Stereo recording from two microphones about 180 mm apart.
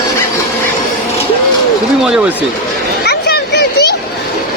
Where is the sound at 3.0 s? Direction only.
65° left (ahead or behind).